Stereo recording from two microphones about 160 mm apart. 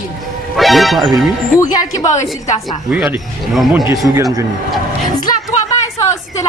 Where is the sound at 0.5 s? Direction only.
Centre (ahead or behind).